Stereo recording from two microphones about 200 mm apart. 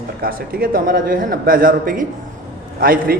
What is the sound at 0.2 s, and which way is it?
Speech, 45° right (ahead or behind).